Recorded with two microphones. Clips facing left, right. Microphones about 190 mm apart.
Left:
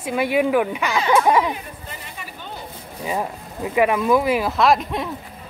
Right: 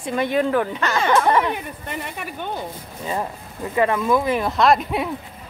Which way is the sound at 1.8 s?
65° right (ahead or behind).